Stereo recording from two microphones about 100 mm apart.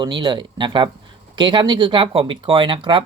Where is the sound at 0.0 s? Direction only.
50° right (ahead or behind).